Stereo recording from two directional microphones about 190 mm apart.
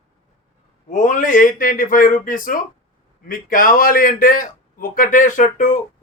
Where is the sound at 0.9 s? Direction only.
40° left (ahead or behind).